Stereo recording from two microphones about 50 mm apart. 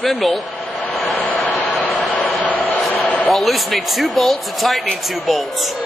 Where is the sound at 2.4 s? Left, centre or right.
Left.